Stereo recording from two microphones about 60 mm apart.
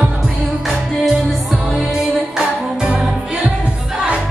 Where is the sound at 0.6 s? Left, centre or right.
Centre.